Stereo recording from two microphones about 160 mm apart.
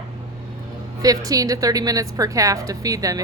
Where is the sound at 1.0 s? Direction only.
20° right (ahead or behind).